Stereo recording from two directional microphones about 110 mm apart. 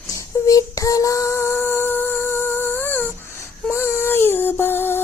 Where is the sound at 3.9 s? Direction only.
20° left (ahead or behind).